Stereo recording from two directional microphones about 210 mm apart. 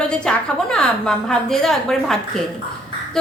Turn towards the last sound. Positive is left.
turn(degrees=0)  # may be behind; listen again after turning